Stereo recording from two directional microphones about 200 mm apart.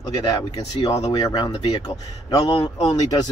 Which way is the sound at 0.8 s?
30° left (ahead or behind).